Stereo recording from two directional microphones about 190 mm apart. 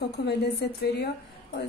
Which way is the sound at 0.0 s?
60° left (ahead or behind).